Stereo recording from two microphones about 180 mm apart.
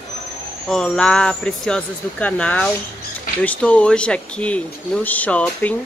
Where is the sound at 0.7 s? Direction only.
5° left (ahead or behind).